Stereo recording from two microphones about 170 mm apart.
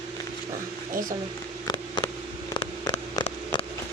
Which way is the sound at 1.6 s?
20° left (ahead or behind).